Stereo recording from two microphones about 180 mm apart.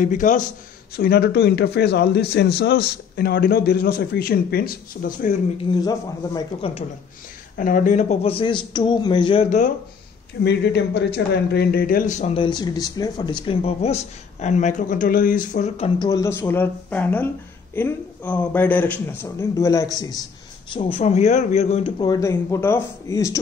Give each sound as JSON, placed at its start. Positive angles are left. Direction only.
{"t": 0.0, "sound": "a man's voice", "side_deg": 45}
{"t": 0.9, "sound": "a man's voice", "side_deg": 60}
{"t": 5.8, "sound": "speech", "side_deg": 20}
{"t": 7.5, "sound": "speech", "side_deg": 50}
{"t": 10.4, "sound": "a man's voice", "side_deg": 70}
{"t": 12.4, "sound": "speech", "side_deg": 25}
{"t": 16.0, "sound": "a man's voice", "side_deg": 20}
{"t": 20.7, "sound": "speech", "side_deg": 30}
{"t": 22.0, "sound": "a man's voice", "side_deg": 20}